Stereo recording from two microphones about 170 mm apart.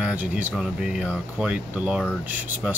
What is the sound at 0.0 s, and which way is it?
Speech, 10° right (ahead or behind).